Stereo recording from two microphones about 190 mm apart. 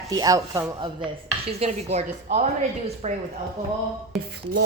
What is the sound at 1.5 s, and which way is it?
Speech, 35° right (ahead or behind).